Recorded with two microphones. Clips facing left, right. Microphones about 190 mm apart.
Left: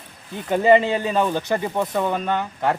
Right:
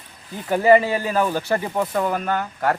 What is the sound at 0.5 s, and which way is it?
Speech, 20° left (ahead or behind).